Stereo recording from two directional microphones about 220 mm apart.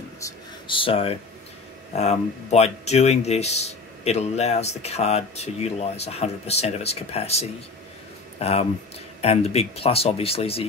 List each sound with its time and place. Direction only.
0.2 s speech: 25° left (ahead or behind)